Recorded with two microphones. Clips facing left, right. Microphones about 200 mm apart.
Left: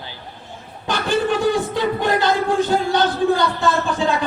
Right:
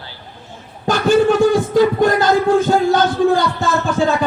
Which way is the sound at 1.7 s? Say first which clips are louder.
Right 6 dB; 45° right (ahead or behind).